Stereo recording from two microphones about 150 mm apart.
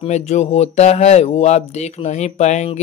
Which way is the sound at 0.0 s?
50° left (ahead or behind).